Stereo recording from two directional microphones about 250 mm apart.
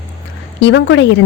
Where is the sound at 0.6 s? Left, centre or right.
Left.